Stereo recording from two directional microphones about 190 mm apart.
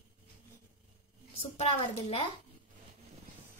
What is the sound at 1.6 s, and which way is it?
Speech, 30° left (ahead or behind).